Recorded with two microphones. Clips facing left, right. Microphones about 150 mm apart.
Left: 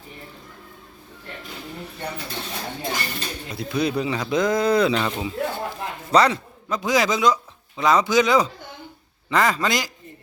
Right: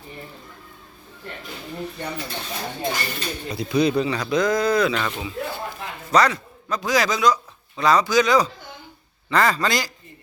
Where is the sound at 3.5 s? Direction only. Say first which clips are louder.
Right 4 dB; centre (ahead or behind); by 5.2 s 15° left (ahead or behind).